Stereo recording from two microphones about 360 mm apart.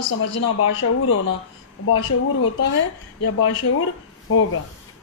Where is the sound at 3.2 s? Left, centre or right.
Left.